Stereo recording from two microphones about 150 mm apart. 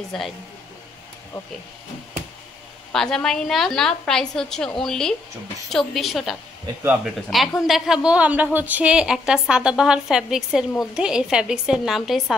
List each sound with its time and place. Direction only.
0.1 s a woman's voice: centre (ahead or behind)
2.9 s a woman's voice: 5° left (ahead or behind)